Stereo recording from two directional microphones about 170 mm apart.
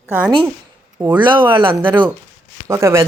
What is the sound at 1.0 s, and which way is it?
Speech, 10° right (ahead or behind).